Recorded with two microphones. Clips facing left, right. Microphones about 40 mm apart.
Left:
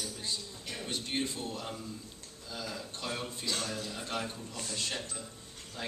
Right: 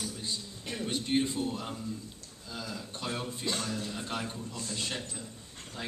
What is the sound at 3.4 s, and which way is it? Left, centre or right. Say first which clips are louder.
Speech: right 2 dB; right.